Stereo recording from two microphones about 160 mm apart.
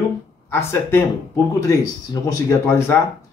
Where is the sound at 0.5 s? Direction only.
15° left (ahead or behind).